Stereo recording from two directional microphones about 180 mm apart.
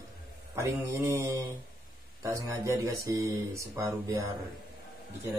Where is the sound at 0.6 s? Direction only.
15° right (ahead or behind).